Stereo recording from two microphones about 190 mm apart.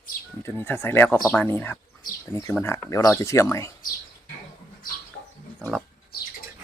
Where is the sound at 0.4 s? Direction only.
10° left (ahead or behind).